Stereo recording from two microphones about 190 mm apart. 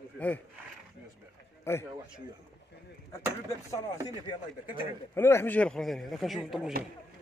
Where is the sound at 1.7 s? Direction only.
10° left (ahead or behind).